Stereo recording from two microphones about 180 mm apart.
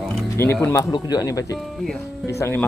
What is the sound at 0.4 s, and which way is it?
Speech, 15° left (ahead or behind).